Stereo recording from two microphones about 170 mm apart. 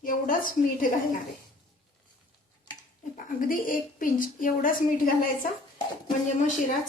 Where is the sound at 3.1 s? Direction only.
55° left (ahead or behind).